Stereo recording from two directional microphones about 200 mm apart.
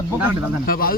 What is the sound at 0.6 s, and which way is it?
Speech, 45° left (ahead or behind).